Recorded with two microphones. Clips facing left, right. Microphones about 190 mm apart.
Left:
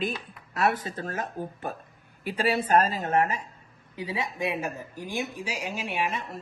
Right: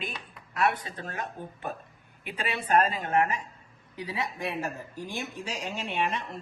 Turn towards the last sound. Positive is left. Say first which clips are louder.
# even
turn(degrees=5)  # may be behind; listen again after turning